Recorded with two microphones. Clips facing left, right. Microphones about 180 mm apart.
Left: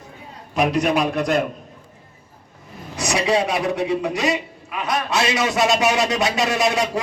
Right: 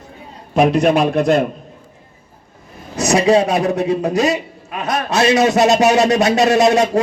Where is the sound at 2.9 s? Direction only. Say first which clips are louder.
Right 7 dB; 45° right (ahead or behind).